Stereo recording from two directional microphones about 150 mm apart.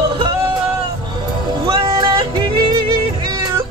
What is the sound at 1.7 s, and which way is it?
Music, 30° right (ahead or behind).